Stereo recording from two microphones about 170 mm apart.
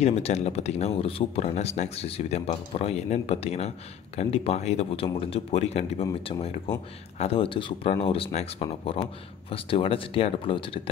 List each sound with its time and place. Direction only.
0.0 s speech: 40° left (ahead or behind)